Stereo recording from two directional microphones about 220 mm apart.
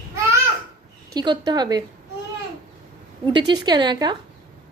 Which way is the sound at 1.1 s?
20° right (ahead or behind).